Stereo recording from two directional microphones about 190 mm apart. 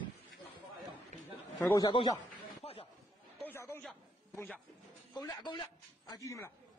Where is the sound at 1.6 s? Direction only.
20° left (ahead or behind).